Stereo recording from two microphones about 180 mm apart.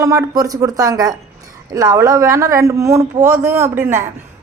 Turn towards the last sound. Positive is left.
turn(degrees=-15)  # may be behind; listen again after turning